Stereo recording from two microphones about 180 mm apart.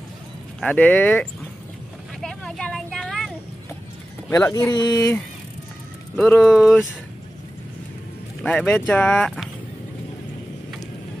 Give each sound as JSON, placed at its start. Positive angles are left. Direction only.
{"t": 0.6, "sound": "speech", "side_deg": 5}
{"t": 2.2, "sound": "vehicle", "side_deg": 5}
{"t": 4.5, "sound": "speech", "side_deg": 20}
{"t": 6.1, "sound": "speech", "side_deg": 5}
{"t": 8.4, "sound": "speech", "side_deg": 5}